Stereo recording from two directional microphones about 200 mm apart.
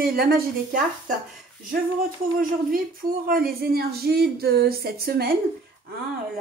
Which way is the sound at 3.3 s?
50° right (ahead or behind).